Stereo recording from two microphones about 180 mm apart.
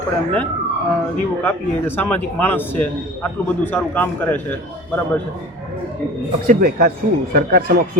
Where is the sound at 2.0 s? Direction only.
10° left (ahead or behind).